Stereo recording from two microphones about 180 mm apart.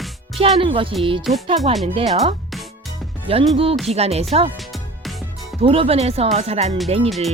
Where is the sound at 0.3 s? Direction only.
30° right (ahead or behind).